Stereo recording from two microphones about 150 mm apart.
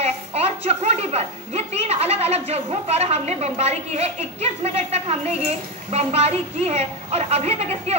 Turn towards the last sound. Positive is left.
turn(degrees=-45)  # may be behind; listen again after turning